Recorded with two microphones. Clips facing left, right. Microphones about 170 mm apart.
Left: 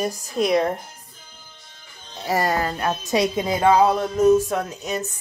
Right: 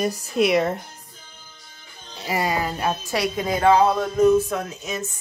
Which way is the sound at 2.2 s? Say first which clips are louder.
Left 2 dB; centre (ahead or behind).